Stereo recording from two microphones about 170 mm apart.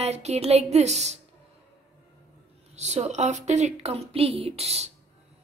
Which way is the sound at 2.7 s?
40° right (ahead or behind).